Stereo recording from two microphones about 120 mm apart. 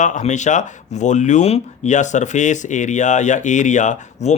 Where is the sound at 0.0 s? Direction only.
85° left.